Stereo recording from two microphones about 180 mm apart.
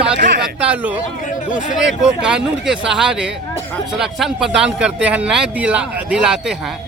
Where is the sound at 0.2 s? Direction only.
65° right (ahead or behind).